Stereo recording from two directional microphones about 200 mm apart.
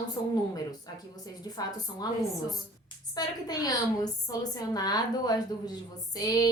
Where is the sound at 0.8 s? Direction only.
20° left (ahead or behind).